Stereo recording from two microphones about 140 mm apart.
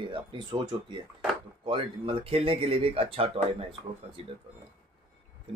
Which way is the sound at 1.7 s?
40° right (ahead or behind).